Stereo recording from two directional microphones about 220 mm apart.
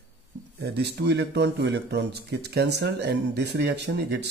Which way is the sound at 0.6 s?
50° right (ahead or behind).